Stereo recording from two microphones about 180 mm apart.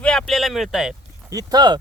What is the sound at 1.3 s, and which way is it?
Speech, 20° right (ahead or behind).